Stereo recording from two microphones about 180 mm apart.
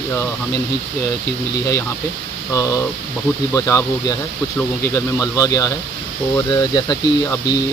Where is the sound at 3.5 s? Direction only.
15° left (ahead or behind).